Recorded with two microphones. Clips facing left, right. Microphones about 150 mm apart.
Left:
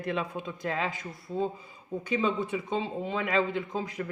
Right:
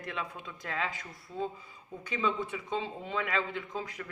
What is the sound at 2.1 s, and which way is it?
Speech, 20° left (ahead or behind).